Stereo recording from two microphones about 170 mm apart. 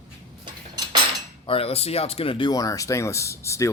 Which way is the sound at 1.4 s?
35° left (ahead or behind).